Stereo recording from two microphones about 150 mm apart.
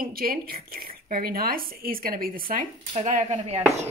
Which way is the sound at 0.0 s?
80° right.